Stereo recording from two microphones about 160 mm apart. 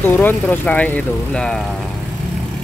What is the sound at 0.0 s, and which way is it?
Speech, 10° left (ahead or behind).